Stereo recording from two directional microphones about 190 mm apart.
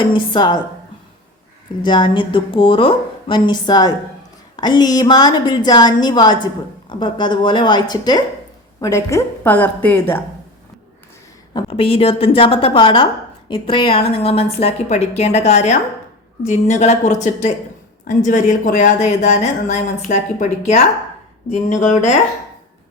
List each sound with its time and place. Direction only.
0.0 s a woman's voice: 25° left (ahead or behind)
1.8 s a woman's voice: 25° left (ahead or behind)
11.5 s a woman's voice: 30° left (ahead or behind)